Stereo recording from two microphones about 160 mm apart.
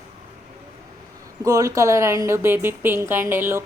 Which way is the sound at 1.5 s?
20° right (ahead or behind).